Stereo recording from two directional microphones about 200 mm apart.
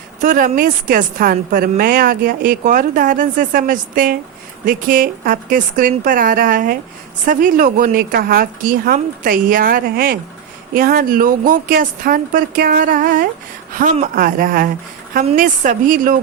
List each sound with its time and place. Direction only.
0.2 s a woman's voice: 40° right (ahead or behind)